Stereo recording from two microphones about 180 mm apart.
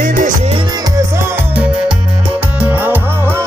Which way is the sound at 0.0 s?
50° right (ahead or behind).